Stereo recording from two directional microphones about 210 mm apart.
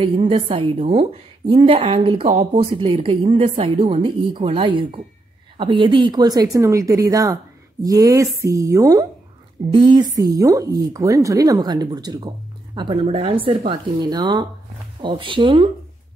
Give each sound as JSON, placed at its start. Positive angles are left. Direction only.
{"t": 0.0, "sound": "speech", "side_deg": -25}